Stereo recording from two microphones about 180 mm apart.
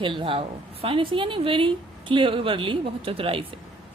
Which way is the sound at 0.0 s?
30° right (ahead or behind).